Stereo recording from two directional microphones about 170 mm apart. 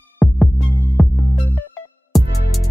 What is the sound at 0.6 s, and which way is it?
Music, 10° left (ahead or behind).